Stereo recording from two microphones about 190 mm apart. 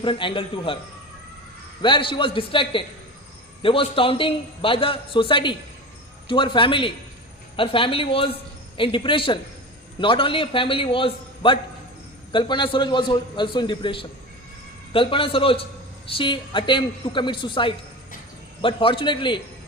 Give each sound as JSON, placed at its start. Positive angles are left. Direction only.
{"t": 0.0, "sound": "a man's voice", "side_deg": 25}
{"t": 1.8, "sound": "a man's voice", "side_deg": 25}